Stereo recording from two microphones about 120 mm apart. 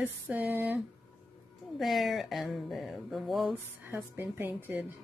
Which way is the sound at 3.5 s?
20° right (ahead or behind).